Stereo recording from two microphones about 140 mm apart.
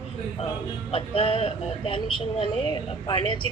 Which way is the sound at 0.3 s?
40° left (ahead or behind).